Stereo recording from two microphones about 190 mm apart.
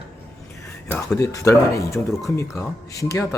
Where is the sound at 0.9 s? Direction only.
5° left (ahead or behind).